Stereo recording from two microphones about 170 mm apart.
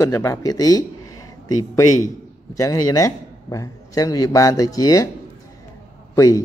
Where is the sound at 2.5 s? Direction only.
20° left (ahead or behind).